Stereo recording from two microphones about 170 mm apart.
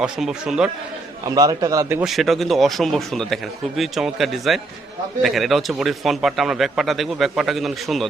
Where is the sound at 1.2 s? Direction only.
20° right (ahead or behind).